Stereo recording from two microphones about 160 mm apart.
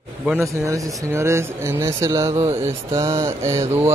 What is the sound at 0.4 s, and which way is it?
Speech, 20° right (ahead or behind).